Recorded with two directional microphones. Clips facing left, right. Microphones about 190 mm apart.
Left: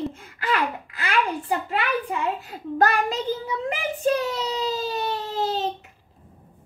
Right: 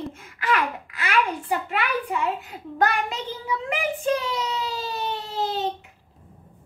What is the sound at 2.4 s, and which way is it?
Child singing, 40° left (ahead or behind).